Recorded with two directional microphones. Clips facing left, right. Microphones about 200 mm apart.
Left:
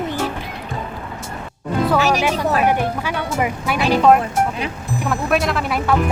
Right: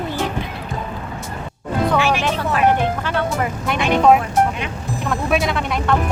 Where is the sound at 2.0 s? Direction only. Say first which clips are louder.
Left 1 dB; 40° left (ahead or behind).